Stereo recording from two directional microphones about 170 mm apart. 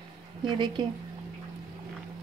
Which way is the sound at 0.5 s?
25° right (ahead or behind).